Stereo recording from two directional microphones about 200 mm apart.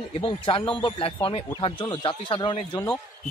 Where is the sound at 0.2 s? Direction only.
25° left (ahead or behind).